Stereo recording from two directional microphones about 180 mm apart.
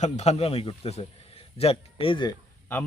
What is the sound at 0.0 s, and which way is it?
A man's voice, 40° left (ahead or behind).